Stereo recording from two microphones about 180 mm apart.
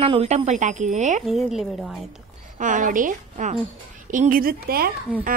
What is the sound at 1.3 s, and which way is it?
Speech, centre (ahead or behind).